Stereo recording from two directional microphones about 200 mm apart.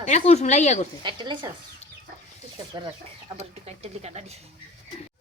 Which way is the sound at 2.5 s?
20° right (ahead or behind).